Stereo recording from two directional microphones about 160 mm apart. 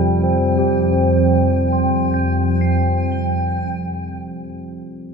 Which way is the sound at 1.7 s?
45° left (ahead or behind).